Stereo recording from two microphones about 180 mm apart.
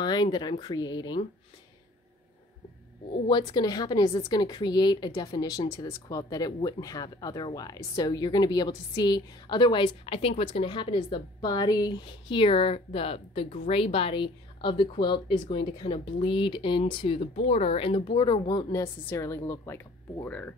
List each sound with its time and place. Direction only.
0.0 s a woman's voice: 25° left (ahead or behind)
3.3 s a woman's voice: 25° left (ahead or behind); by 20.5 s 10° left (ahead or behind)